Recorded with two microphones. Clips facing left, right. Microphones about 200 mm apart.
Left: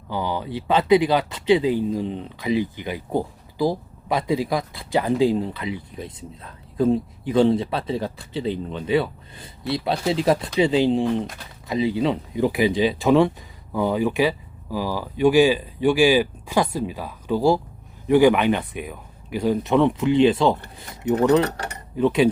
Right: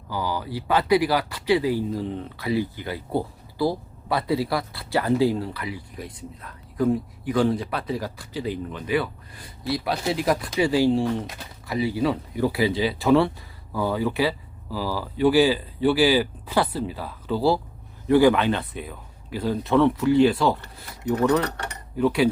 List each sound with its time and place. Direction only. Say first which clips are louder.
0.1 s speech: left 2 dB; 20° left (ahead or behind)